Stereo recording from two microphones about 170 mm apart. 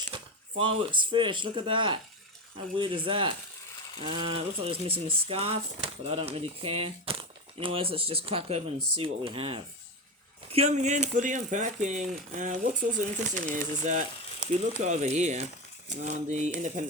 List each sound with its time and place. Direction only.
0.1 s speech: 30° right (ahead or behind); by 16.8 s 45° right (ahead or behind)